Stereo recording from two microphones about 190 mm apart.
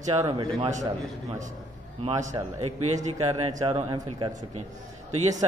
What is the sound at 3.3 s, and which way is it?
Speech, 20° right (ahead or behind).